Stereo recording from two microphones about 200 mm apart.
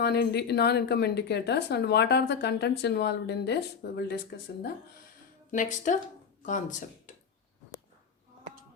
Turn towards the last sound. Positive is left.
turn(degrees=40)  # may be behind; listen again after turning